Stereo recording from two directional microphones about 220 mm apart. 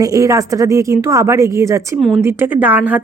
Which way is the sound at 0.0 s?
15° right (ahead or behind).